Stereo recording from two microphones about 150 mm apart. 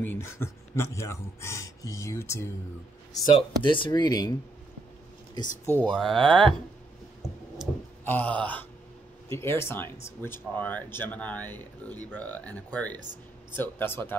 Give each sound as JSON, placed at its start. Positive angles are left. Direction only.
{"t": 0.0, "sound": "speech", "side_deg": 15}
{"t": 3.3, "sound": "speech", "side_deg": 35}
{"t": 5.7, "sound": "speech", "side_deg": 10}
{"t": 6.1, "sound": "speech", "side_deg": -35}
{"t": 7.7, "sound": "a sound", "side_deg": -5}
{"t": 8.0, "sound": "speech", "side_deg": 10}